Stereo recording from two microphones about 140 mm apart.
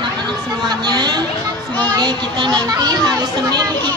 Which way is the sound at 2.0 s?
30° right (ahead or behind).